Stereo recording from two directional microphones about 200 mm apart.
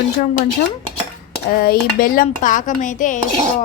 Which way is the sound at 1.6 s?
45° left (ahead or behind).